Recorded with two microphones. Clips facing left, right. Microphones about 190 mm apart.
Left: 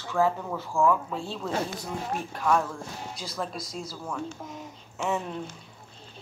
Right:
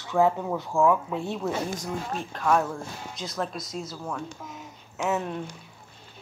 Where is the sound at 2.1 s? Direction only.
10° left (ahead or behind).